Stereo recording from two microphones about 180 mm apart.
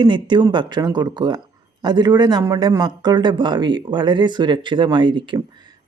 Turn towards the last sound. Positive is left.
turn(degrees=-25)  # may be behind; listen again after turning